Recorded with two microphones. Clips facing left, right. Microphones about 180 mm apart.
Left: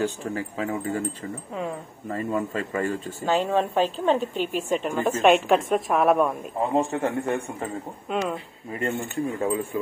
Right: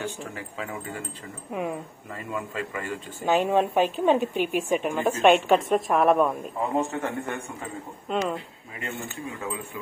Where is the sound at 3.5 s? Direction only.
15° right (ahead or behind).